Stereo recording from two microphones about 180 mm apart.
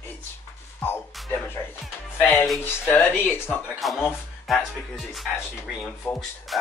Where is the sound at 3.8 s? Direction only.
Centre (ahead or behind).